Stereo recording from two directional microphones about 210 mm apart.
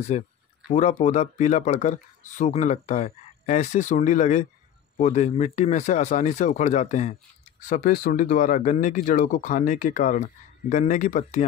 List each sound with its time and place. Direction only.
0.1 s speech: 30° left (ahead or behind)